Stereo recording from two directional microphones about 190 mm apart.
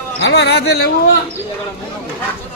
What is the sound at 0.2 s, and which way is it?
Speech, 65° left (ahead or behind).